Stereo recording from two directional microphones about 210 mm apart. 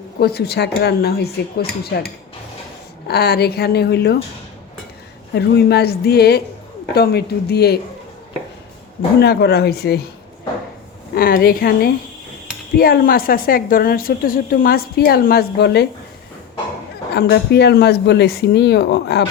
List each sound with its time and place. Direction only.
0.2 s a woman's voice: 50° left (ahead or behind)
3.1 s a woman's voice: 50° left (ahead or behind)
5.3 s a woman's voice: 50° left (ahead or behind)
9.2 s a woman's voice: 50° left (ahead or behind)
11.1 s a woman's voice: 45° left (ahead or behind)
17.2 s a woman's voice: 55° left (ahead or behind)